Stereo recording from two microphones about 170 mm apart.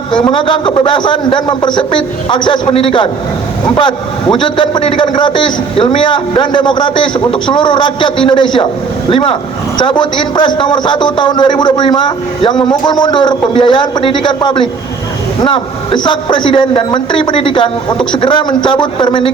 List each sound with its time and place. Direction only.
0.2 s a man's voice: 30° left (ahead or behind)